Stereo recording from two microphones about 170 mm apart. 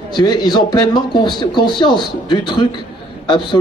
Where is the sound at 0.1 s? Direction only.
25° left (ahead or behind).